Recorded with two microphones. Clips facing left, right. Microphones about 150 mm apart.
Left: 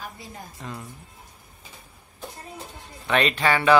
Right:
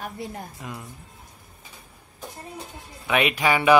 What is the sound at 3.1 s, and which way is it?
Speech, 10° right (ahead or behind).